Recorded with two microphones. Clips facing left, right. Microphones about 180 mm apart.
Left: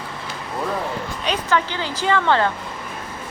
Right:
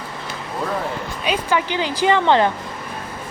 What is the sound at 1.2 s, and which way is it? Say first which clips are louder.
Speech: right 1 dB; 10° right (ahead or behind).